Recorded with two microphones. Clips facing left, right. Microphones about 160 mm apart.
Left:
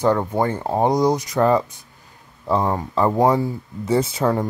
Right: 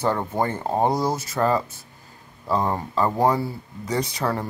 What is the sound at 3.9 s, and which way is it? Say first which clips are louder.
Speech: left 6 dB; 25° left (ahead or behind).